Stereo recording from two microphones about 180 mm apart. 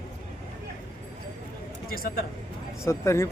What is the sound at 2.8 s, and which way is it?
Speech, 15° left (ahead or behind).